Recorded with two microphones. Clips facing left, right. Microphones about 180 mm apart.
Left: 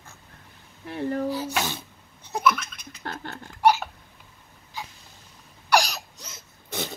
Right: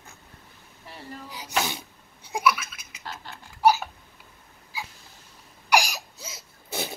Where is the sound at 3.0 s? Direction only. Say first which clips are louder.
Left 5 dB; 55° left (ahead or behind).